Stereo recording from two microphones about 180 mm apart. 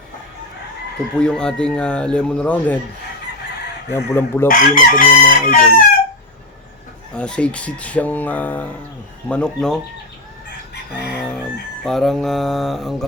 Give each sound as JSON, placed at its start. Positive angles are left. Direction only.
{"t": 1.2, "sound": "speech", "side_deg": 5}
{"t": 3.9, "sound": "speech", "side_deg": 15}
{"t": 4.4, "sound": "chicken", "side_deg": 50}
{"t": 7.1, "sound": "speech", "side_deg": 5}
{"t": 11.1, "sound": "chicken", "side_deg": 5}
{"t": 11.9, "sound": "speech", "side_deg": 0}